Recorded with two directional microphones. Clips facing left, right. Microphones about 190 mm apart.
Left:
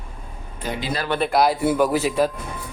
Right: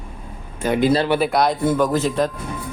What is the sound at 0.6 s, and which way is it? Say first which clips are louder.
Speech: right 10 dB; 50° right (ahead or behind).